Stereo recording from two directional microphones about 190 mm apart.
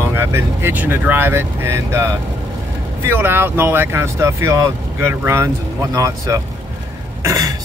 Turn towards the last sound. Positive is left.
turn(degrees=-15)  # may be behind; listen again after turning